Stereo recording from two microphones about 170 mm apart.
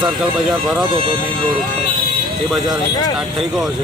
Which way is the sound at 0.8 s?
30° right (ahead or behind).